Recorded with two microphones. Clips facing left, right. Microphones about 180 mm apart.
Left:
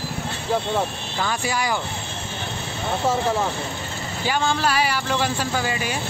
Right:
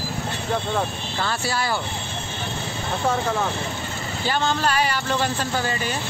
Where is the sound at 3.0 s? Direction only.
5° left (ahead or behind).